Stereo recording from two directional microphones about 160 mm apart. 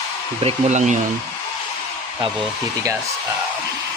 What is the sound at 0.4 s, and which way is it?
Speech, 50° right (ahead or behind).